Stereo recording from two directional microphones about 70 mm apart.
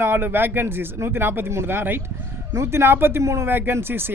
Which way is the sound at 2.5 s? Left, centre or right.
Right.